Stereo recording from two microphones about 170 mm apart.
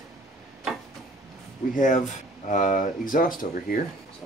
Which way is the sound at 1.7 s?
50° left (ahead or behind).